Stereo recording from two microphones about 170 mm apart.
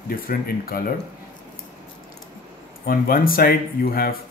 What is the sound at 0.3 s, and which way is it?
Speech, 60° left (ahead or behind).